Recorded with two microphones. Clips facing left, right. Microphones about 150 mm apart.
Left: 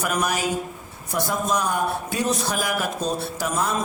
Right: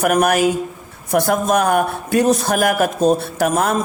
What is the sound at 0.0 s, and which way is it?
Speech, 60° right (ahead or behind).